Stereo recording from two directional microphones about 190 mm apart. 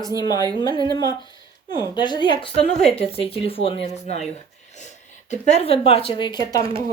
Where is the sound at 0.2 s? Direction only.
20° left (ahead or behind).